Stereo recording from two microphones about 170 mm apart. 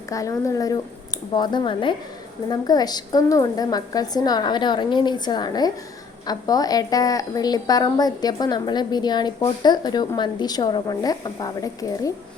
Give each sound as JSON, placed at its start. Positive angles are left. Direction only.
{"t": 0.1, "sound": "a woman's voice", "side_deg": 20}